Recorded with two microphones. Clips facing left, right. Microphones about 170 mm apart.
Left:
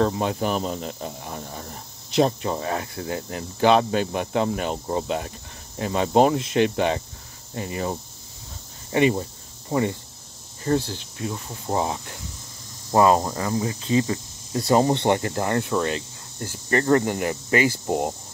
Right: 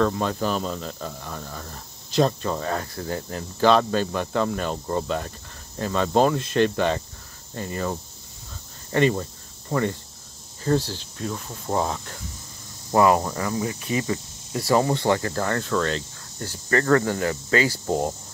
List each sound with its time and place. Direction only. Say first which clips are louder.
0.0 s speech: even; 20° left (ahead or behind)
12.9 s speech: left 1 dB; 25° left (ahead or behind)